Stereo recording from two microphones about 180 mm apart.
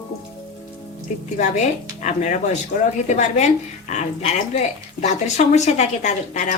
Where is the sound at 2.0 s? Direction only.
40° left (ahead or behind).